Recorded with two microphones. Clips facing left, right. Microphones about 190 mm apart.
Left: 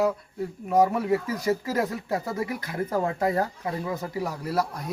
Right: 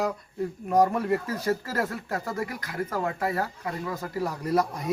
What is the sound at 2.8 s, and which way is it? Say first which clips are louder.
Speech: left 3 dB; 30° left (ahead or behind).